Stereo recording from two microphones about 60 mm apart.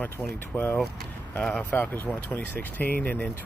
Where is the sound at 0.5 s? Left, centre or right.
Centre.